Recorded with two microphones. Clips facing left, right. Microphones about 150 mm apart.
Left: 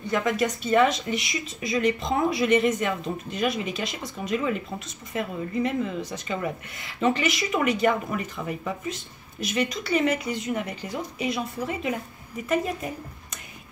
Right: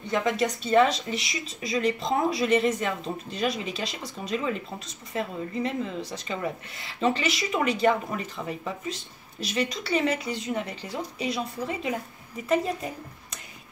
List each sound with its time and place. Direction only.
0.1 s speech: 30° right (ahead or behind)